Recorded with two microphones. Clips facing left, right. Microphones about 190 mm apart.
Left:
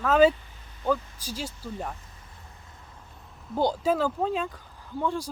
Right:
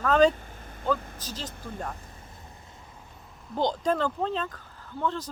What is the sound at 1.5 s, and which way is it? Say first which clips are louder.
Speech: left 2 dB; 55° right (ahead or behind).